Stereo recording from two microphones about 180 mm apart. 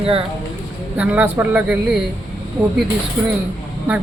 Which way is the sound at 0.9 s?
10° right (ahead or behind).